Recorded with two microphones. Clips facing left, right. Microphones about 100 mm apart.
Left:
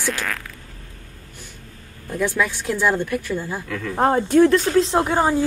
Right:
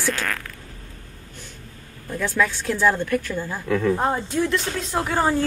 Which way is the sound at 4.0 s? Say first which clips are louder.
Left 8 dB; 60° left (ahead or behind).